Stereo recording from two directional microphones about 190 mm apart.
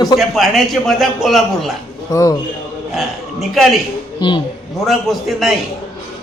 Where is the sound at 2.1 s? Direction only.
20° left (ahead or behind).